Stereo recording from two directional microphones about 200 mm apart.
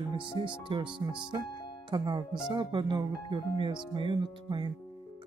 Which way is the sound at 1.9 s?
20° right (ahead or behind).